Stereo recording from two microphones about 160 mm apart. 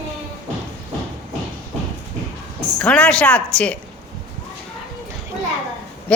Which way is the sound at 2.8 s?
5° left (ahead or behind).